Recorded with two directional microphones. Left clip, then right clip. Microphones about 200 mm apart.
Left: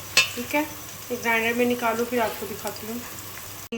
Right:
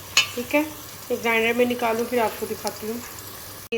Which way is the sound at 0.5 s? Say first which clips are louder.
Right 4 dB; 5° right (ahead or behind).